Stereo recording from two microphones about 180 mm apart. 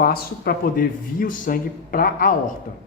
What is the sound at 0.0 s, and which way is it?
Speech, 55° left (ahead or behind).